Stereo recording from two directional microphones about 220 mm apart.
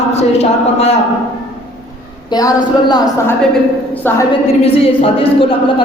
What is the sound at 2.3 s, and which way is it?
A woman's voice, 15° left (ahead or behind).